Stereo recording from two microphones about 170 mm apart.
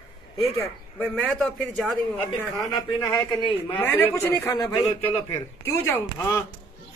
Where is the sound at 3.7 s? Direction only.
10° left (ahead or behind).